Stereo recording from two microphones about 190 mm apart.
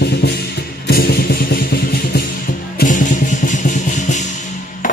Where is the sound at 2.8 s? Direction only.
40° left (ahead or behind).